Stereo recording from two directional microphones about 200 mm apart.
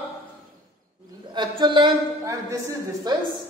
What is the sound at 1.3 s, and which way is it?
A woman's voice, 25° right (ahead or behind).